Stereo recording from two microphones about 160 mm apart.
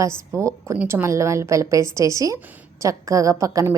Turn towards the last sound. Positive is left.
turn(degrees=-20)  # may be behind; listen again after turning